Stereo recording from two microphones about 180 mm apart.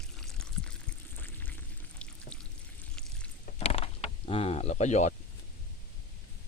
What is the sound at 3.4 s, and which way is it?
Mechanisms, 35° left (ahead or behind).